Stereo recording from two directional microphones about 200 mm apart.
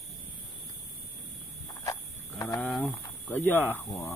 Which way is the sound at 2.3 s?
10° left (ahead or behind).